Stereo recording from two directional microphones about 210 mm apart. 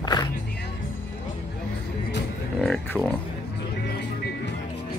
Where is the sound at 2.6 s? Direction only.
5° left (ahead or behind).